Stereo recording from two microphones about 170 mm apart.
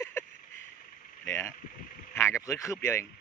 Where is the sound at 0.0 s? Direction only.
15° left (ahead or behind).